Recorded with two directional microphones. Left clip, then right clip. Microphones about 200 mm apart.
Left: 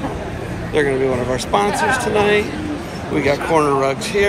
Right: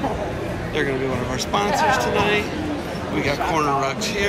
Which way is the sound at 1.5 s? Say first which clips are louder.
Left 2 dB; 15° right (ahead or behind).